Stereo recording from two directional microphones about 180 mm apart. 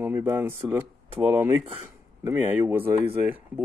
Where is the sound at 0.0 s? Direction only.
10° right (ahead or behind).